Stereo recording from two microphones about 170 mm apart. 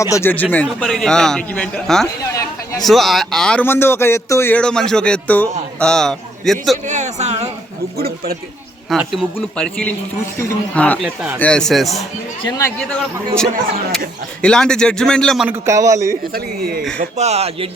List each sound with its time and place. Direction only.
0.0 s a man's voice: 15° left (ahead or behind)
2.3 s a sound: 20° left (ahead or behind)
2.8 s a man's voice: centre (ahead or behind)
6.8 s speech: 45° right (ahead or behind)
7.9 s a man's voice: 65° right (ahead or behind)
9.0 s a man's voice: 5° left (ahead or behind)
12.5 s speech: 20° left (ahead or behind)
12.8 s a man's voice: 5° left (ahead or behind)
15.4 s a man's voice: 15° right (ahead or behind)
17.0 s speech: 40° right (ahead or behind)